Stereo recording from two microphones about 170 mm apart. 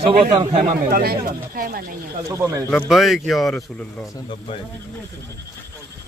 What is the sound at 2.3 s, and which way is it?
Speech, 15° right (ahead or behind).